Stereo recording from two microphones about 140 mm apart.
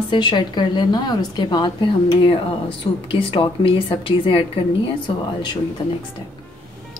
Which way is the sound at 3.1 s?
40° left (ahead or behind).